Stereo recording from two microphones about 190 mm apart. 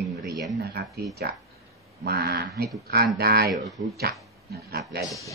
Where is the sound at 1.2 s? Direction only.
55° right (ahead or behind).